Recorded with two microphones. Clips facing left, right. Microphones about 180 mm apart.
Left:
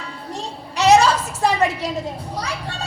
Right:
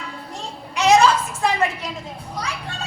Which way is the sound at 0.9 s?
35° left (ahead or behind).